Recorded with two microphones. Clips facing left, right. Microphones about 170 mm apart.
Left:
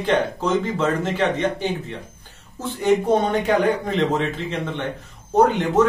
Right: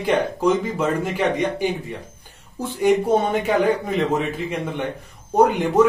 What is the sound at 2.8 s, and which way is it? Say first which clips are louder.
Speech: even; 10° right (ahead or behind).